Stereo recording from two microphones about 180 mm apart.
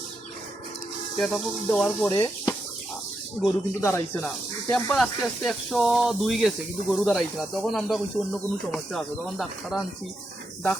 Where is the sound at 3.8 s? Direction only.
15° left (ahead or behind).